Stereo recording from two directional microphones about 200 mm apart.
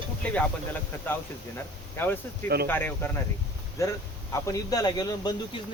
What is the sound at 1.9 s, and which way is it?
Speech, 10° left (ahead or behind).